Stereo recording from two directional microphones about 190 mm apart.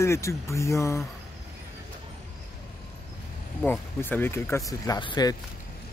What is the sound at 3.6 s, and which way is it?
Speech, 10° left (ahead or behind).